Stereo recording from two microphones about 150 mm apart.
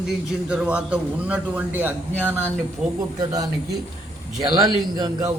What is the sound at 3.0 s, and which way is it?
A man's voice, 25° right (ahead or behind).